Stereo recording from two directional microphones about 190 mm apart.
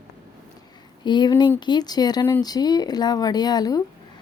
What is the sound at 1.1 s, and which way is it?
Speech, 25° left (ahead or behind).